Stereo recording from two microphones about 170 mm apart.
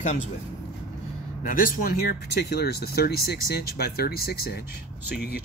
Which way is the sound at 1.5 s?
55° left (ahead or behind).